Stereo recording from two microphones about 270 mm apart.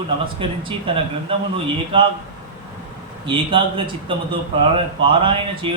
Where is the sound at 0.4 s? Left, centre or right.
Centre.